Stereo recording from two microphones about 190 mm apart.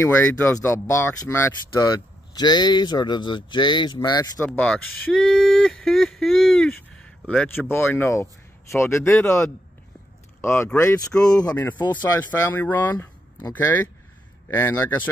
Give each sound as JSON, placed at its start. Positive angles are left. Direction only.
{"t": 0.0, "sound": "speech", "side_deg": 10}
{"t": 4.4, "sound": "speech", "side_deg": 5}
{"t": 5.1, "sound": "a sound", "side_deg": 5}
{"t": 7.7, "sound": "speech", "side_deg": 10}
{"t": 10.4, "sound": "speech", "side_deg": 15}
{"t": 11.4, "sound": "speech", "side_deg": 10}